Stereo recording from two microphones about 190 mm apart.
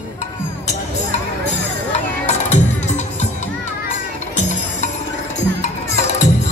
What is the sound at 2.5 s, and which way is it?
Music, 35° left (ahead or behind).